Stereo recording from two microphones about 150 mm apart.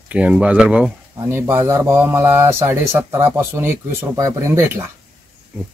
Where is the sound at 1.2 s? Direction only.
15° right (ahead or behind).